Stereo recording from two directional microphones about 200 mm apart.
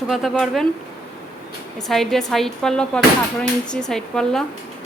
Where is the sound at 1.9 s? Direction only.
Centre (ahead or behind).